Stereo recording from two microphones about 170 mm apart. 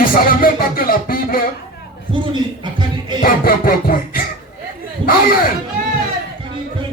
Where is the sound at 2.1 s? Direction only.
30° right (ahead or behind).